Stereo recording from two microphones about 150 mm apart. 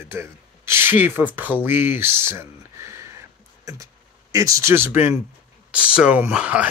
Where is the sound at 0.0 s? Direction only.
15° right (ahead or behind).